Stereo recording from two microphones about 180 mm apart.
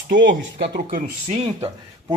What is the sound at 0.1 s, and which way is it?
Speech, 80° right.